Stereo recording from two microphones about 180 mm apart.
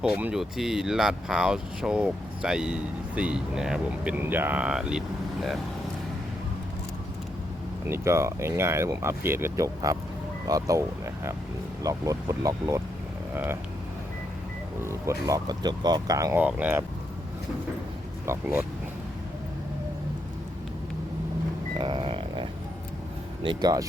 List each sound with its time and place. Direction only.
0.0 s speech: 5° right (ahead or behind)
7.9 s speech: 15° right (ahead or behind)
14.8 s speech: 15° right (ahead or behind)
16.4 s speech: 10° right (ahead or behind)
18.3 s speech: 10° right (ahead or behind)
21.8 s a sound: 30° right (ahead or behind)
23.4 s speech: 25° right (ahead or behind)